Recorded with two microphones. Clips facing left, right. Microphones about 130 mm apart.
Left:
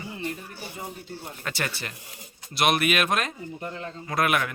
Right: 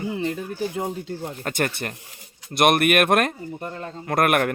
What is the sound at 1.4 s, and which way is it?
Speech, 50° right (ahead or behind).